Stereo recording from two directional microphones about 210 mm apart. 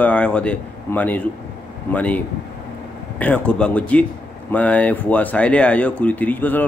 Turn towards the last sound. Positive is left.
turn(degrees=10)  # may be behind; listen again after turning